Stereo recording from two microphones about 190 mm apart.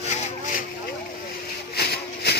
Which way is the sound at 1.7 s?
55° left (ahead or behind).